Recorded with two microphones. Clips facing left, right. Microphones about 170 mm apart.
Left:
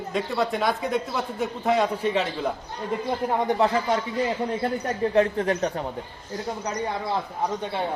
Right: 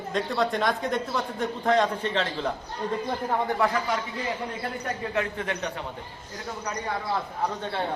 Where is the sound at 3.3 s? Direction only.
20° left (ahead or behind).